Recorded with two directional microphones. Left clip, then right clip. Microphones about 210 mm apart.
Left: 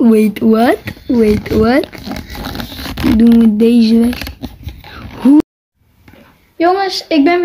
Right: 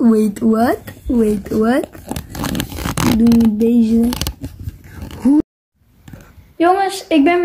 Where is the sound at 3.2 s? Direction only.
45° left (ahead or behind).